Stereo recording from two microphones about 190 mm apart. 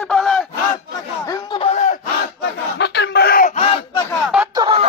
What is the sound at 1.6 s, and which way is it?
Battle cry, 30° left (ahead or behind).